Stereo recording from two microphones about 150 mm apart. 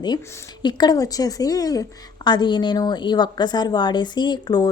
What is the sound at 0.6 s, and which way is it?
A woman's voice, 30° left (ahead or behind).